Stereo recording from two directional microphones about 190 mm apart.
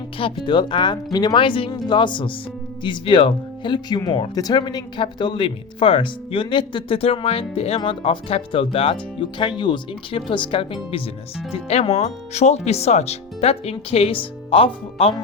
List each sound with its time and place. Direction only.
0.2 s speech: 25° left (ahead or behind)